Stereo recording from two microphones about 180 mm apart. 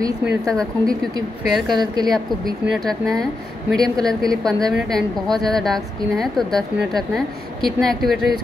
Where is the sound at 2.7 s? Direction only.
Centre (ahead or behind).